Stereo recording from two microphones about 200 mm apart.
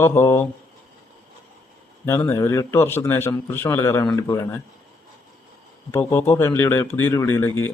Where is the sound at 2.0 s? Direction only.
10° left (ahead or behind).